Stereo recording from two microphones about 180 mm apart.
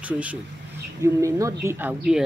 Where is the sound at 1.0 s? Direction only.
15° right (ahead or behind).